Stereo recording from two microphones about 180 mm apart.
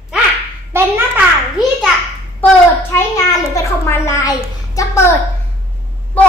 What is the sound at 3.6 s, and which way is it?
A child's voice, 15° left (ahead or behind).